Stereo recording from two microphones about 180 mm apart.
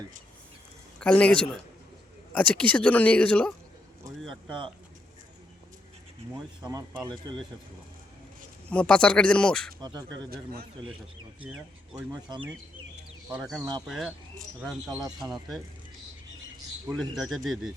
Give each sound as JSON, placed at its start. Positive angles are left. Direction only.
{"t": 0.9, "sound": "speech", "side_deg": 5}
{"t": 6.6, "sound": "speech", "side_deg": -20}
{"t": 8.7, "sound": "speech", "side_deg": 5}
{"t": 10.2, "sound": "a man's voice", "side_deg": -55}
{"t": 11.4, "sound": "speech", "side_deg": -5}
{"t": 13.8, "sound": "speech", "side_deg": 0}
{"t": 15.2, "sound": "speech", "side_deg": 0}
{"t": 16.8, "sound": "speech", "side_deg": 0}